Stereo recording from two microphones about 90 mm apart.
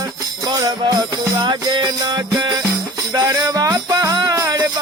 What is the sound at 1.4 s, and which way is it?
Music, 60° right (ahead or behind).